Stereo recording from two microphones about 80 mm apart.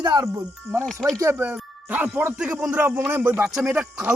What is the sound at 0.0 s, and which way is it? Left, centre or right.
Speech, right.